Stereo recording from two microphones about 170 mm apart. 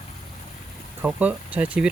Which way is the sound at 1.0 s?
10° right (ahead or behind).